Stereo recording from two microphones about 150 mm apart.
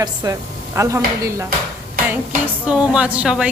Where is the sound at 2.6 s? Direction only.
5° right (ahead or behind).